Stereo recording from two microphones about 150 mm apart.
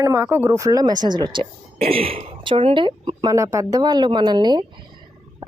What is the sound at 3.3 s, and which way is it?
A woman's voice, 20° right (ahead or behind).